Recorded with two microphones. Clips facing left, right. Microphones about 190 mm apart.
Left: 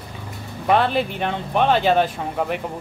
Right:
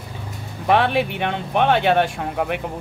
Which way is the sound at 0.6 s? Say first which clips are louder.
Right 1 dB; centre (ahead or behind).